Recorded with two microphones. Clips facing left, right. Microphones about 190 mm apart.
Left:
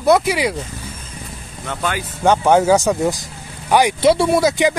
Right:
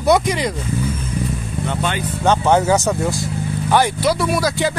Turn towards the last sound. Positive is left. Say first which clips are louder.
# left 4 dB
turn(degrees=25)  # may be behind; listen again after turning